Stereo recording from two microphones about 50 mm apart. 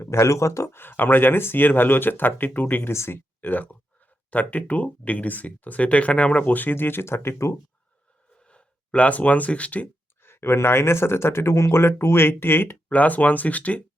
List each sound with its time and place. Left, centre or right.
0.0 s speech: left
0.7 s speech: left
2.9 s speech: left
3.5 s speech: left
8.4 s speech: left
9.8 s speech: left
12.9 s speech: left